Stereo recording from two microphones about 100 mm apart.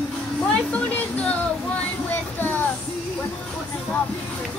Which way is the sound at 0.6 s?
15° left (ahead or behind).